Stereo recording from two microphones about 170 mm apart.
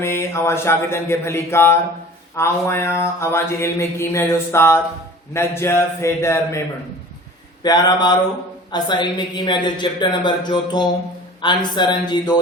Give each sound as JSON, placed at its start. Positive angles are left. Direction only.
{"t": 0.0, "sound": "mantra", "side_deg": 15}
{"t": 7.6, "sound": "a woman's voice", "side_deg": 25}